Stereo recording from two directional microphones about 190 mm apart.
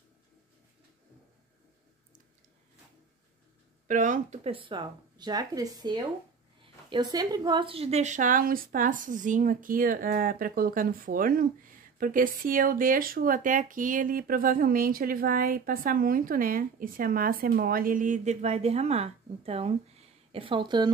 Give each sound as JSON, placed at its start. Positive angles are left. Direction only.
{"t": 3.8, "sound": "a woman's voice", "side_deg": -40}